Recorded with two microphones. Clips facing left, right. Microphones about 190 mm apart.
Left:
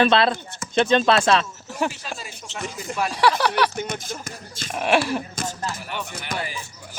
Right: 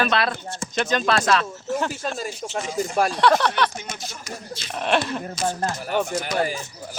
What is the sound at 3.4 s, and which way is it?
Speech, 10° left (ahead or behind).